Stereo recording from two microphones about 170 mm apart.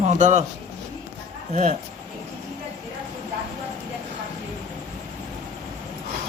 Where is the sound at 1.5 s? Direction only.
40° right (ahead or behind).